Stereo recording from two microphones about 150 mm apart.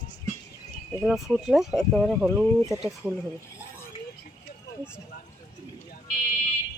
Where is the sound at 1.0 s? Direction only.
5° right (ahead or behind).